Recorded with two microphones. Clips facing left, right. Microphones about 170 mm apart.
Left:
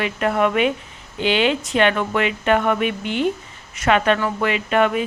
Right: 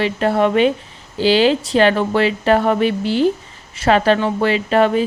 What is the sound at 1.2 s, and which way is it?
Speech, 35° right (ahead or behind).